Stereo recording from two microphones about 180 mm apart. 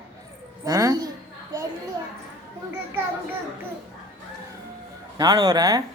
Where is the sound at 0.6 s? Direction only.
20° right (ahead or behind).